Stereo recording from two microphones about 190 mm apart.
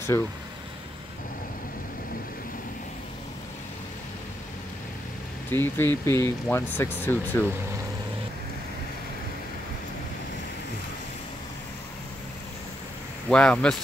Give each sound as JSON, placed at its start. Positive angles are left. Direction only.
{"t": 0.1, "sound": "speech", "side_deg": 15}
{"t": 5.5, "sound": "speech", "side_deg": 10}
{"t": 13.3, "sound": "speech", "side_deg": 5}